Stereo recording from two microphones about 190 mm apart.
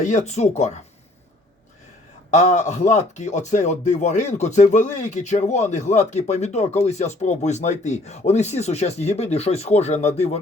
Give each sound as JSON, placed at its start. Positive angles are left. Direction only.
{"t": 0.0, "sound": "a man's voice", "side_deg": 40}
{"t": 2.3, "sound": "a man's voice", "side_deg": 40}